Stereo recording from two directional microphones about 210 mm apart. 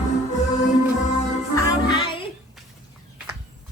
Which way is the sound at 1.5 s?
20° left (ahead or behind).